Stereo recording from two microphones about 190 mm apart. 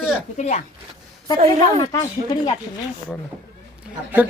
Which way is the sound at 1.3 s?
30° right (ahead or behind).